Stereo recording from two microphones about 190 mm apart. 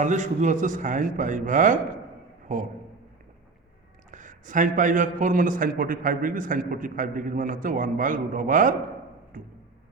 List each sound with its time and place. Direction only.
0.0 s a man's voice: 40° right (ahead or behind)
4.1 s a man's voice: 40° right (ahead or behind)